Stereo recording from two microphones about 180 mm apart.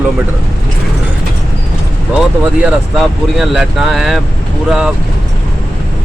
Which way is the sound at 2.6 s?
Centre (ahead or behind).